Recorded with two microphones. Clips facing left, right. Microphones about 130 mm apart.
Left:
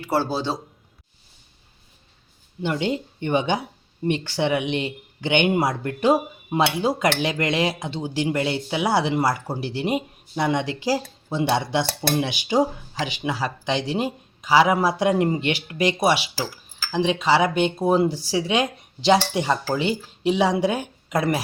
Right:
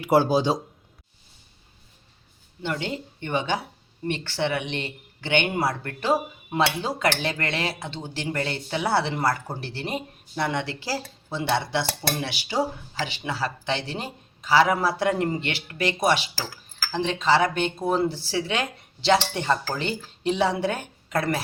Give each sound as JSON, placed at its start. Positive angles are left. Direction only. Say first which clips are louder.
{"t": 0.0, "sound": "speech", "louder": "right 4 dB", "side_deg": -15}
{"t": 2.6, "sound": "speech", "louder": "left 5 dB", "side_deg": 15}